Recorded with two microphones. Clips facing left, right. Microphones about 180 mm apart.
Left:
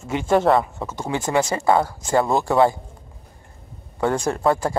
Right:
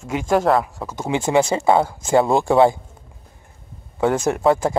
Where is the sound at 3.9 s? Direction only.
5° right (ahead or behind).